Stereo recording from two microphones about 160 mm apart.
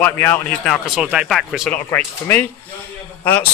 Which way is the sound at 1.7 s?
10° left (ahead or behind).